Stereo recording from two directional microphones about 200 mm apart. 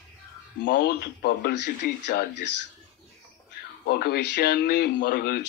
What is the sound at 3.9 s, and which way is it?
Speech, 55° left (ahead or behind).